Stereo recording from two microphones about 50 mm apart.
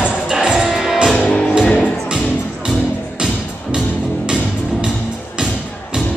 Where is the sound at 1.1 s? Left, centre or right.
Left.